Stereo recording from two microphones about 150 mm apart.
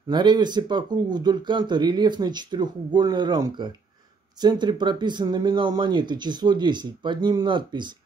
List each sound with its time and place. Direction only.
0.1 s speech: 30° right (ahead or behind)